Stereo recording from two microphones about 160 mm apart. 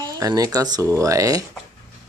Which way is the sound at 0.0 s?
25° right (ahead or behind).